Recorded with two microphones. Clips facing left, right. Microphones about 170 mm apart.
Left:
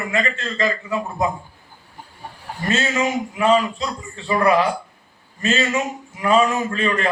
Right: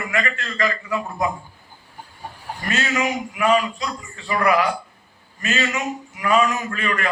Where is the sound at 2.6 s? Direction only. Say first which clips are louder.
Left 2 dB; 25° left (ahead or behind).